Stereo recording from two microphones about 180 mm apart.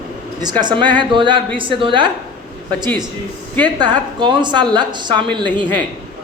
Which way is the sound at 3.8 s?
25° right (ahead or behind).